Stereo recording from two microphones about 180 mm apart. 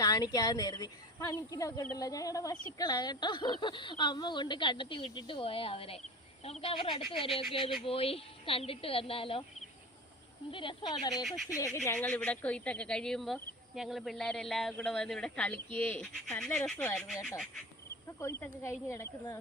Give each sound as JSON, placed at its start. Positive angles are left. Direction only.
{"t": 0.0, "sound": "a woman's voice", "side_deg": 20}
{"t": 10.5, "sound": "speech", "side_deg": 25}
{"t": 11.2, "sound": "speech", "side_deg": 0}
{"t": 11.4, "sound": "speech", "side_deg": 20}
{"t": 11.9, "sound": "speech", "side_deg": 5}
{"t": 18.2, "sound": "speech", "side_deg": 15}